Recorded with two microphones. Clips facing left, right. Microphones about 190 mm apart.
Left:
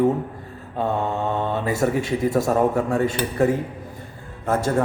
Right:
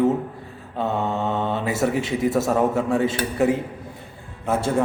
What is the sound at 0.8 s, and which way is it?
Speech, 15° left (ahead or behind).